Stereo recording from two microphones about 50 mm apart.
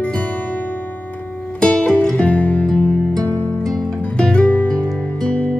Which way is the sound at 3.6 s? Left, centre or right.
Centre.